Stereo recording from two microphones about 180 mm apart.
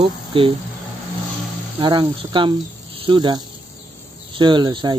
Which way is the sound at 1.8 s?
25° right (ahead or behind).